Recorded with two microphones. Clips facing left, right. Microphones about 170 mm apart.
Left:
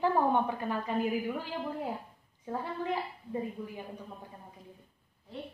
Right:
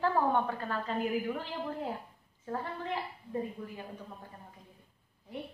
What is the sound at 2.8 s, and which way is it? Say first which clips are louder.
A woman's voice: left 3 dB; 15° left (ahead or behind).